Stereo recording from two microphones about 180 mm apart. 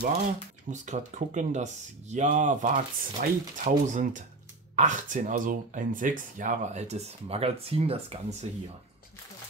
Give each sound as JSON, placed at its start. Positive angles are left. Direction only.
{"t": 0.7, "sound": "speech", "side_deg": -40}